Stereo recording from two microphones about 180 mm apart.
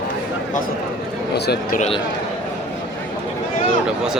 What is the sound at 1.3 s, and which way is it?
Speech, 65° left (ahead or behind).